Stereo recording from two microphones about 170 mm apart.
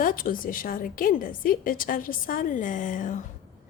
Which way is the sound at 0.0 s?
55° left (ahead or behind).